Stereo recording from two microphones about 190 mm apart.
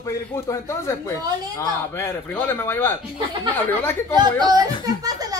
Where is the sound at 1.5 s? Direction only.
10° left (ahead or behind).